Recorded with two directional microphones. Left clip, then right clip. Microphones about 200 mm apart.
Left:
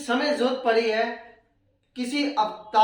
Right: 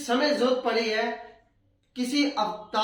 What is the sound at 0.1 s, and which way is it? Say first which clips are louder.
Speech: even; 20° left (ahead or behind).